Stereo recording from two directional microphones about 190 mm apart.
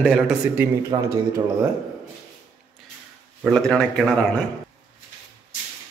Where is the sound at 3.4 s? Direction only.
5° left (ahead or behind).